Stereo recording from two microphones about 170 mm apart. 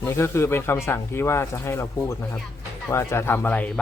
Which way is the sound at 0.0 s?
15° left (ahead or behind).